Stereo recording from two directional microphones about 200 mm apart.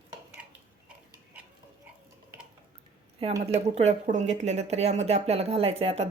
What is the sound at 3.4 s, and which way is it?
Speech, 30° right (ahead or behind).